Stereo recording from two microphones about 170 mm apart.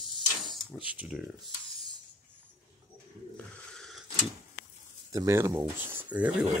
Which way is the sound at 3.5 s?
5° left (ahead or behind).